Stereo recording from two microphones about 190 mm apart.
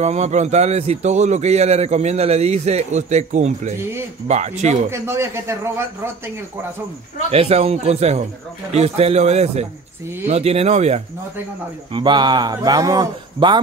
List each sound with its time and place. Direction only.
0.0 s a man's voice: 35° right (ahead or behind)
4.9 s a man's voice: 15° right (ahead or behind)
7.2 s a man's voice: 30° right (ahead or behind)
11.9 s speech: 25° right (ahead or behind)